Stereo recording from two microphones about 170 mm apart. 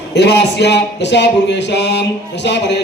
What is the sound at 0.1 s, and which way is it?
A man's voice, 80° left.